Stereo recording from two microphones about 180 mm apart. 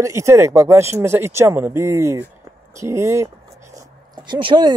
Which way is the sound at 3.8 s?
25° right (ahead or behind).